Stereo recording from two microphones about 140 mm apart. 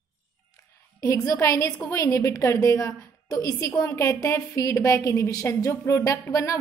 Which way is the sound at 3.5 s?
15° left (ahead or behind).